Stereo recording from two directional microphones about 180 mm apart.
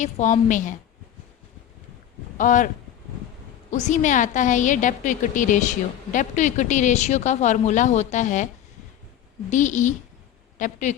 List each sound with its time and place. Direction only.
0.0 s a woman's voice: 40° left (ahead or behind)
2.4 s a woman's voice: 45° left (ahead or behind)
3.7 s a woman's voice: 40° left (ahead or behind)
9.5 s a woman's voice: 45° left (ahead or behind)